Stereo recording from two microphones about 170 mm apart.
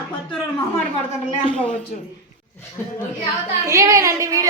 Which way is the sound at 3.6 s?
20° right (ahead or behind).